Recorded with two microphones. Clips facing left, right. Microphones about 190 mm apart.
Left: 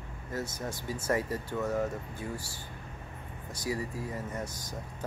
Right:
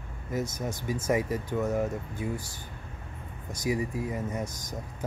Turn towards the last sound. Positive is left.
turn(degrees=-15)  # may be behind; listen again after turning